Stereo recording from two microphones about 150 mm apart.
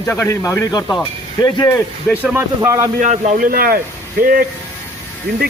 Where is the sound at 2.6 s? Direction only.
20° right (ahead or behind).